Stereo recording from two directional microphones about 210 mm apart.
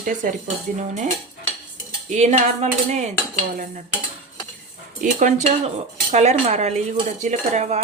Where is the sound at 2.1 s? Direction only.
35° right (ahead or behind).